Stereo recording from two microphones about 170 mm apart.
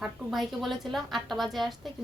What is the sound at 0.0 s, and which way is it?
A woman's voice, centre (ahead or behind).